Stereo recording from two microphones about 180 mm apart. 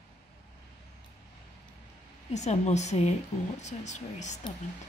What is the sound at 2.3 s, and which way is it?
A woman's voice, 40° left (ahead or behind).